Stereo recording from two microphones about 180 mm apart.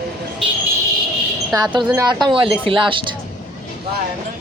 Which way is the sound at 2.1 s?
25° right (ahead or behind).